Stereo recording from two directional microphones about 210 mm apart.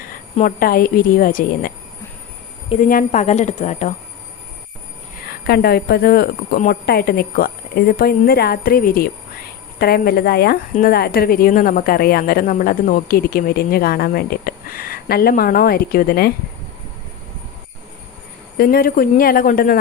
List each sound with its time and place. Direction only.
0.3 s a woman's voice: 45° left (ahead or behind)
2.9 s a woman's voice: 35° left (ahead or behind)
5.2 s a woman's voice: 50° left (ahead or behind)
18.5 s a woman's voice: 45° left (ahead or behind)